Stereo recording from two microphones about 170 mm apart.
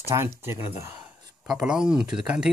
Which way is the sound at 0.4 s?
15° right (ahead or behind).